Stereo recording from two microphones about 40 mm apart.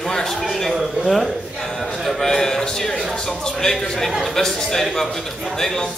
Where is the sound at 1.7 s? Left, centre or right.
Centre.